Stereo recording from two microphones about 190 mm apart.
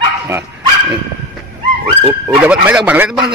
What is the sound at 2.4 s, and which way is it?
Speech, 10° right (ahead or behind).